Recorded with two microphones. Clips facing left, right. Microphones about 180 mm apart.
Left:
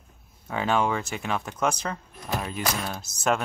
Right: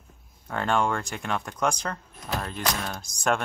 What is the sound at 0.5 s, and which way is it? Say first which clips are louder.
Speech: left 1 dB; 5° left (ahead or behind).